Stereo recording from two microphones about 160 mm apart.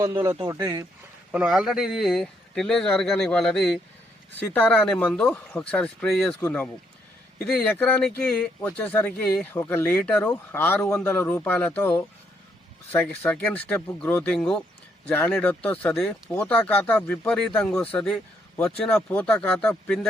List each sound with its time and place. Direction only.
0.0 s speech: 25° right (ahead or behind)
1.3 s speech: 5° right (ahead or behind)